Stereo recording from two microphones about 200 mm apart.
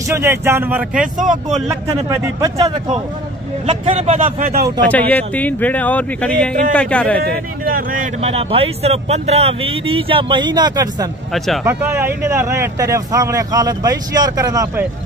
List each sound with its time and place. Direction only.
0.1 s speech: 10° right (ahead or behind); by 4.6 s 45° right (ahead or behind)
4.8 s speech: 10° left (ahead or behind)
7.6 s speech: 45° right (ahead or behind); by 11.1 s 20° right (ahead or behind)
11.3 s speech: centre (ahead or behind)
11.6 s speech: 10° right (ahead or behind)